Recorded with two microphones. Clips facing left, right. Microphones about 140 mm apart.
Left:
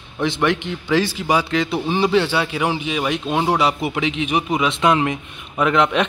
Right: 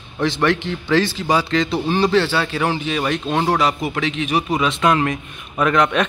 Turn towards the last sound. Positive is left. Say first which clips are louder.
# even
turn(degrees=15)  # may be behind; listen again after turning